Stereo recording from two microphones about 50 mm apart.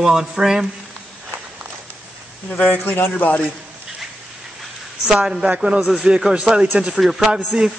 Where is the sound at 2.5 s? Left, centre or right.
Left.